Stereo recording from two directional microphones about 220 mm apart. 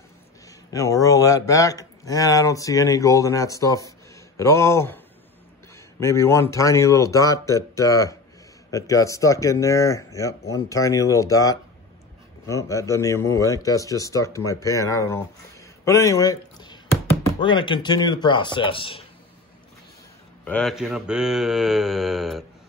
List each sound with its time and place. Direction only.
0.7 s speech: 15° left (ahead or behind)
15.8 s a sound: 15° left (ahead or behind)
17.4 s speech: 20° left (ahead or behind)
20.4 s mantra: 5° left (ahead or behind)